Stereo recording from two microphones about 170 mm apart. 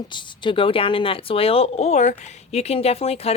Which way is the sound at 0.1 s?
30° left (ahead or behind).